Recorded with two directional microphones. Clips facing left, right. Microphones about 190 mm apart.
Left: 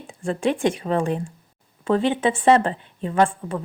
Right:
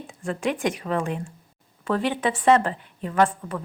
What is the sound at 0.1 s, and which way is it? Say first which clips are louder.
A woman's voice: left 4 dB; 30° left (ahead or behind).